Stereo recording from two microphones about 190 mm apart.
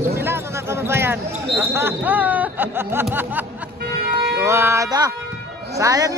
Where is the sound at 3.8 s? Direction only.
55° right (ahead or behind).